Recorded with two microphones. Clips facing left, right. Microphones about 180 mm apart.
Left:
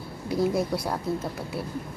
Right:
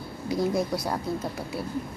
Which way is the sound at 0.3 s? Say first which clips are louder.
Left 1 dB; 5° left (ahead or behind).